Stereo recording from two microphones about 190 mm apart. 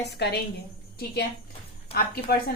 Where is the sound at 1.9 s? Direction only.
35° left (ahead or behind).